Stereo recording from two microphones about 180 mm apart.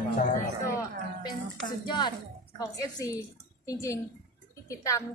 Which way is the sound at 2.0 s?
25° left (ahead or behind).